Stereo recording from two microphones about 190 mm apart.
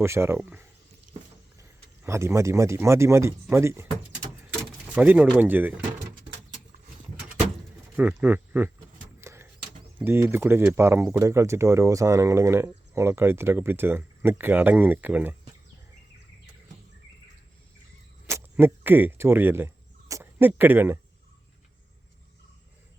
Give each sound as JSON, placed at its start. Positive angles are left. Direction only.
{"t": 0.0, "sound": "speech", "side_deg": -15}
{"t": 2.0, "sound": "speech", "side_deg": -15}
{"t": 4.9, "sound": "speech", "side_deg": -10}
{"t": 7.9, "sound": "speech", "side_deg": -10}
{"t": 9.2, "sound": "typewriter", "side_deg": -15}
{"t": 10.0, "sound": "speech", "side_deg": -15}
{"t": 18.3, "sound": "cricket", "side_deg": -15}
{"t": 20.5, "sound": "speech", "side_deg": -10}